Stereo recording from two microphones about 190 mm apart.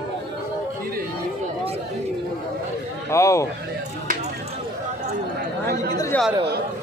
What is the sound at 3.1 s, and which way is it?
Speech, 15° left (ahead or behind).